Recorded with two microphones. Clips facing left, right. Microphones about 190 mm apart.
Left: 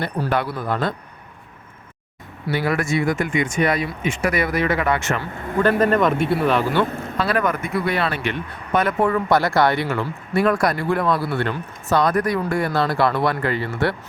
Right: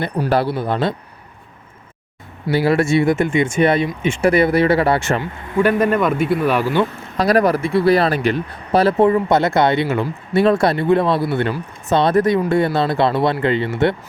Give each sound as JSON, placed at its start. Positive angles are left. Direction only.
{"t": 0.3, "sound": "speech", "side_deg": -30}
{"t": 2.5, "sound": "speech", "side_deg": -30}
{"t": 5.2, "sound": "speech", "side_deg": -15}
{"t": 7.2, "sound": "speech", "side_deg": -40}